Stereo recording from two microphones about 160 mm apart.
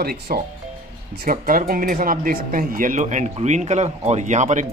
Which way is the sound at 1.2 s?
60° right (ahead or behind).